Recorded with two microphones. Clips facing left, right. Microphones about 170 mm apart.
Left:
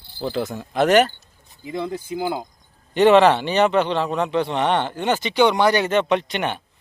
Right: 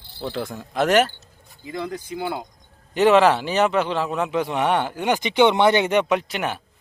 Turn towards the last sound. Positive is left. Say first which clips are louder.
# left 1 dB
turn(degrees=-5)  # may be behind; listen again after turning